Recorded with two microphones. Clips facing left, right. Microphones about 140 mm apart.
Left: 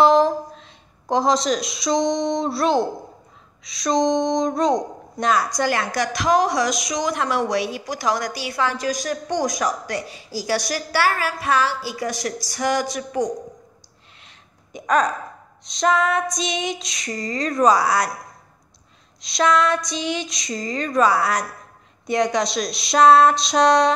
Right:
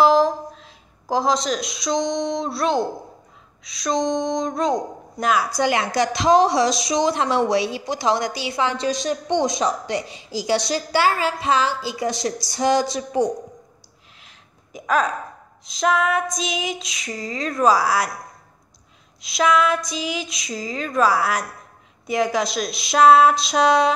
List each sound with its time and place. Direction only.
0.0 s speech: centre (ahead or behind)
3.6 s female singing: centre (ahead or behind)
5.6 s a woman's voice: 20° right (ahead or behind)
14.2 s a sound: centre (ahead or behind)
15.6 s female singing: 5° right (ahead or behind)
19.2 s female singing: 5° right (ahead or behind)